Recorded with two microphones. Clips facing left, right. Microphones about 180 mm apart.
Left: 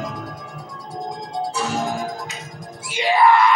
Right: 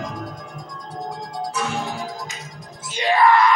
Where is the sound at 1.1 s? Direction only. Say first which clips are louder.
Left 3 dB; 20° left (ahead or behind); by 2.3 s 50° left (ahead or behind).